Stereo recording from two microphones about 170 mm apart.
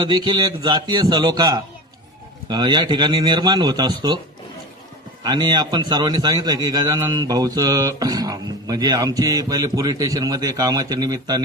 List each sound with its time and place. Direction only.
0.0 s a man's voice: 25° right (ahead or behind)
5.2 s a man's voice: 25° right (ahead or behind)